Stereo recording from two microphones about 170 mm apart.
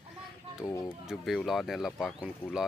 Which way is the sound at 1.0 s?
Centre (ahead or behind).